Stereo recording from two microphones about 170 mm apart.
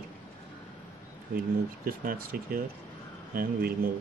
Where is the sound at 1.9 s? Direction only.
55° right (ahead or behind).